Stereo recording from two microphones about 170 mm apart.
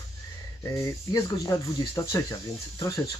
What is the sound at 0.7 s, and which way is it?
Speech, 15° left (ahead or behind).